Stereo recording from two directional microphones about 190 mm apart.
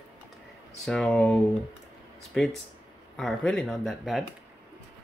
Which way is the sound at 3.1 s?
Centre (ahead or behind).